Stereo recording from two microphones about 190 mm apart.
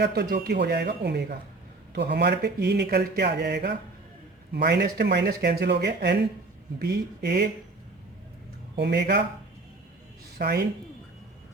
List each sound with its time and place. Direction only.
0.0 s speech: 55° right (ahead or behind)
8.7 s speech: 60° right (ahead or behind)
10.3 s speech: 55° right (ahead or behind)